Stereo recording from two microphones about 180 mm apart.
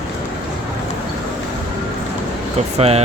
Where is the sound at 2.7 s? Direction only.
35° right (ahead or behind).